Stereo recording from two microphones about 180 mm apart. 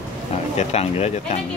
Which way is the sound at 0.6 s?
35° left (ahead or behind).